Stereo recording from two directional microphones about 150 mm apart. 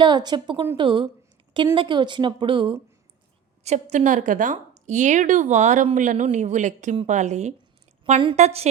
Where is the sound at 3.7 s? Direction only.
50° right (ahead or behind).